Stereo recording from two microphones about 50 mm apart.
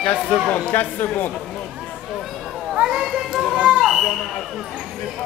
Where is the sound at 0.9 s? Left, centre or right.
Left.